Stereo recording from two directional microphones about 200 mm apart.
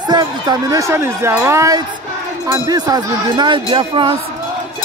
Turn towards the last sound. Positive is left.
turn(degrees=-25)  # may be behind; listen again after turning